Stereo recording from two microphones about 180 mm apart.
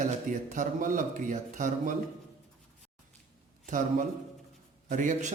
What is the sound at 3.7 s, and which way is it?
A man's voice, 45° right (ahead or behind).